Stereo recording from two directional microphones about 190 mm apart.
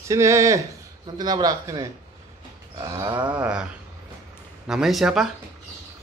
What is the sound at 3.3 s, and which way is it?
Speech, 5° right (ahead or behind).